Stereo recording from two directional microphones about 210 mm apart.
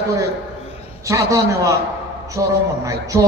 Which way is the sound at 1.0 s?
15° right (ahead or behind).